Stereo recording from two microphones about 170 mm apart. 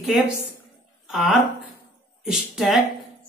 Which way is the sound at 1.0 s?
Centre (ahead or behind).